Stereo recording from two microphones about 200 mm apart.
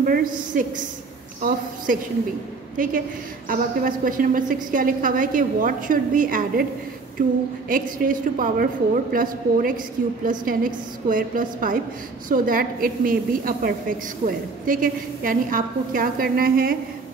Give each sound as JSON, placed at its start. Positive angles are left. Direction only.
{"t": 0.0, "sound": "a woman's voice", "side_deg": -45}
{"t": 1.9, "sound": "a woman's voice", "side_deg": -45}